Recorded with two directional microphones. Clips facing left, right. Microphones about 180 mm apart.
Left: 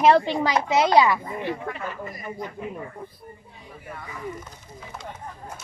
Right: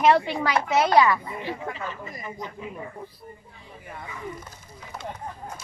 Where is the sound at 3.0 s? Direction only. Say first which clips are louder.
Left 1 dB; 50° left (ahead or behind).